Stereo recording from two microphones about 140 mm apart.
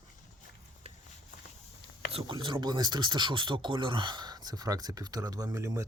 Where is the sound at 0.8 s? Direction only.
45° right (ahead or behind).